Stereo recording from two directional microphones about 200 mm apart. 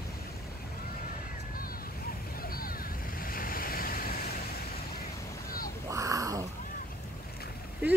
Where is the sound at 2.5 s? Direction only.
45° left (ahead or behind).